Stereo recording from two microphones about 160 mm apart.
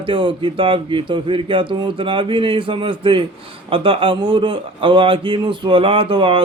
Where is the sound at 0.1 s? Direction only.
30° right (ahead or behind).